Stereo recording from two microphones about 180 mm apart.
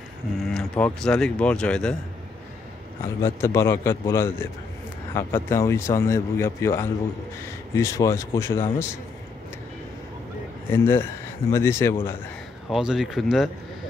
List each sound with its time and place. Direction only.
0.4 s speech: centre (ahead or behind)
3.2 s speech: 15° left (ahead or behind)
10.7 s speech: 10° left (ahead or behind)
12.6 s speech: centre (ahead or behind)